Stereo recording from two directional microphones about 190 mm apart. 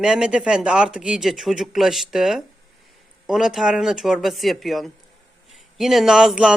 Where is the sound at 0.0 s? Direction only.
5° right (ahead or behind).